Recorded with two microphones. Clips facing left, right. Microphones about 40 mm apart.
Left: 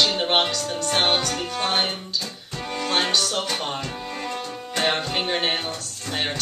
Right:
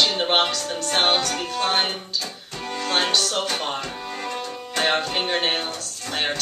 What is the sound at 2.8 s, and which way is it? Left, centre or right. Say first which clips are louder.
Music: right 1 dB; centre.